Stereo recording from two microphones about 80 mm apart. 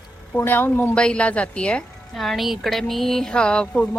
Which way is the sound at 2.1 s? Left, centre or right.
Centre.